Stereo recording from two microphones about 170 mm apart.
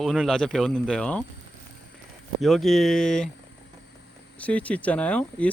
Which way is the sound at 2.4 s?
Centre (ahead or behind).